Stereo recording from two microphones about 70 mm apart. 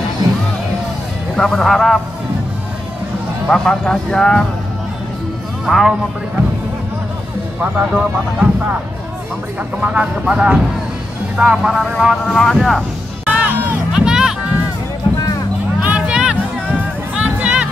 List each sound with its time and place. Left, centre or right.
1.3 s a man's voice: centre
3.4 s speech: centre
5.7 s a man's voice: centre
7.6 s speech: centre
9.8 s a man's voice: centre
13.3 s music: right
13.9 s music: centre
15.8 s music: centre